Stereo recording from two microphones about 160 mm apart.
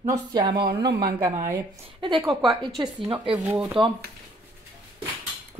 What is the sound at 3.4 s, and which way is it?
Speech, 10° right (ahead or behind).